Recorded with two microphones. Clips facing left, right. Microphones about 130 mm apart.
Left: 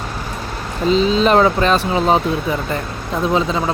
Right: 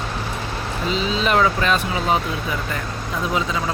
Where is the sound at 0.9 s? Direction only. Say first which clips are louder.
Left 7 dB; 35° left (ahead or behind).